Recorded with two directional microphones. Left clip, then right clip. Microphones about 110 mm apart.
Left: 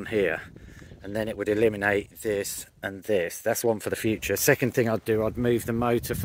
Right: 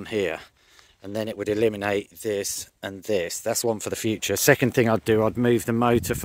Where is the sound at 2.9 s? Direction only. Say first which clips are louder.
Even; 35° right (ahead or behind).